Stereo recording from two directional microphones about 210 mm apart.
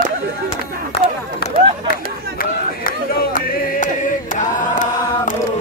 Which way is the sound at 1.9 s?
40° left (ahead or behind).